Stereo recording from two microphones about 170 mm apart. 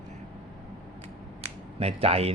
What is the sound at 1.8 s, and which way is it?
Speech, 35° right (ahead or behind).